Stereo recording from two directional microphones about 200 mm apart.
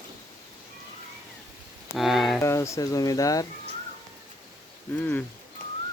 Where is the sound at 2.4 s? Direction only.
15° left (ahead or behind).